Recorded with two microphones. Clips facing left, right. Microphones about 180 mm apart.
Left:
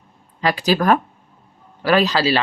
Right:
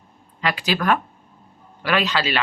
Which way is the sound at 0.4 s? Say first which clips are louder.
Left 5 dB; 40° left (ahead or behind).